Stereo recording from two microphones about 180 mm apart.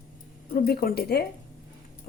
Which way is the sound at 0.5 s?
55° left (ahead or behind).